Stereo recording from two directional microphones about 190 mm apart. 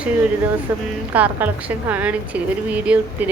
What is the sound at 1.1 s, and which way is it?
A woman's voice, 10° right (ahead or behind).